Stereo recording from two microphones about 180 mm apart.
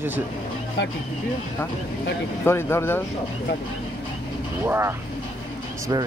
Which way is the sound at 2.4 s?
15° left (ahead or behind).